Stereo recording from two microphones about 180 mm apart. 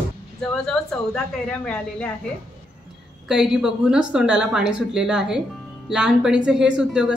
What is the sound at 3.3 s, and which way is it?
Speech, 5° right (ahead or behind).